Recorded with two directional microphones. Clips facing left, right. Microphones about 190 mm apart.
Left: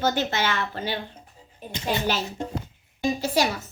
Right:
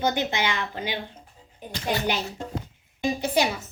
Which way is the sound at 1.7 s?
20° left (ahead or behind).